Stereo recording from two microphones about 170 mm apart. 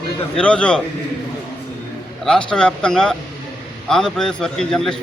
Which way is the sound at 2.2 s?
5° left (ahead or behind).